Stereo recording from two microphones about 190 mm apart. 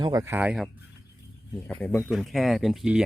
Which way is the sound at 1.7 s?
5° left (ahead or behind).